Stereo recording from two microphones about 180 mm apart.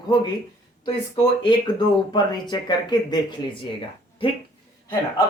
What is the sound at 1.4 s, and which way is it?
Speech, 25° left (ahead or behind).